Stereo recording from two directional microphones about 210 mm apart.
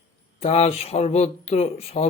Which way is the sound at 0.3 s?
30° left (ahead or behind).